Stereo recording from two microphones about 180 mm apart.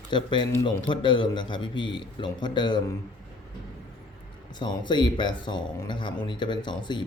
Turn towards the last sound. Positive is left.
turn(degrees=25)  # may be behind; listen again after turning